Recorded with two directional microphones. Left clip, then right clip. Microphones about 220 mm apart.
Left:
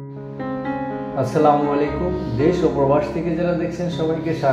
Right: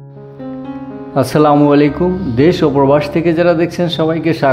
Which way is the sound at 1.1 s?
45° right (ahead or behind).